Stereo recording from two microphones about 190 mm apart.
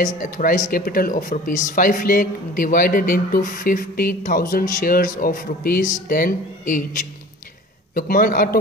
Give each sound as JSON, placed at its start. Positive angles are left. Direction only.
{"t": 0.0, "sound": "speech", "side_deg": 45}